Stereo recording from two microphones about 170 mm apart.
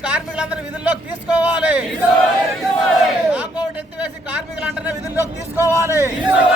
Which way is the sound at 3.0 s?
10° right (ahead or behind).